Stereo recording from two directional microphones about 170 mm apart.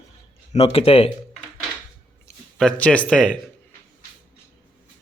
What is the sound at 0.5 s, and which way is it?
Speech, 35° left (ahead or behind).